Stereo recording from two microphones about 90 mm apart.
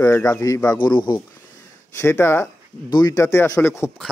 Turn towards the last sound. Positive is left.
turn(degrees=30)  # may be behind; listen again after turning